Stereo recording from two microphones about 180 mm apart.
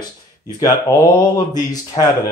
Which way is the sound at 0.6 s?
20° left (ahead or behind).